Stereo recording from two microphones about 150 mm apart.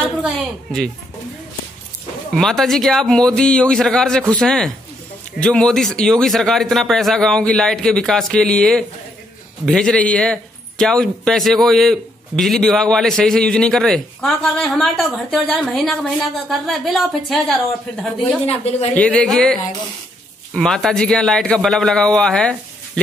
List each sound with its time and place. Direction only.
0.2 s a man's voice: centre (ahead or behind)
2.3 s a man's voice: centre (ahead or behind)
18.5 s speech: 45° left (ahead or behind)
18.9 s a man's voice: 10° left (ahead or behind)